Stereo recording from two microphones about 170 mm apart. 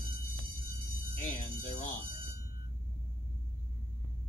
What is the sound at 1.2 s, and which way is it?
Music, 45° left (ahead or behind).